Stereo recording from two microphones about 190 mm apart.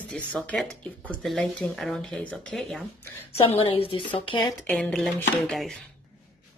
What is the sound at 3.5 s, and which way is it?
Speech, 30° left (ahead or behind).